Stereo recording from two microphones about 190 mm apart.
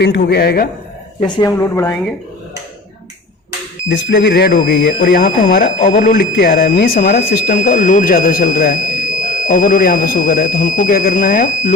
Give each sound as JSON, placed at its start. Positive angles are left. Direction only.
{"t": 0.0, "sound": "speech", "side_deg": 60}
{"t": 1.2, "sound": "speech", "side_deg": 20}
{"t": 3.8, "sound": "speech", "side_deg": 65}